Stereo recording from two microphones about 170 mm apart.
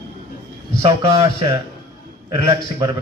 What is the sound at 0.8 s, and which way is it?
Speech, 25° right (ahead or behind).